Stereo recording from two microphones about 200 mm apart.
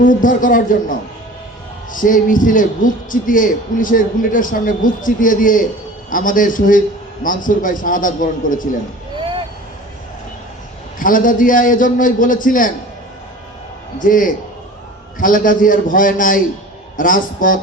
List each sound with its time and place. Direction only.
0.0 s a man's voice: 40° left (ahead or behind)
11.0 s a man's voice: 40° left (ahead or behind)
14.0 s a man's voice: 40° left (ahead or behind)